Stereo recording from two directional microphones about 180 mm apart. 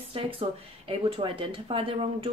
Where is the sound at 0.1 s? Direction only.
30° right (ahead or behind).